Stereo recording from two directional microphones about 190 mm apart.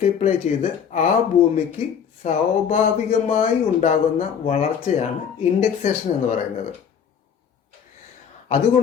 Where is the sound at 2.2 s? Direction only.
35° left (ahead or behind).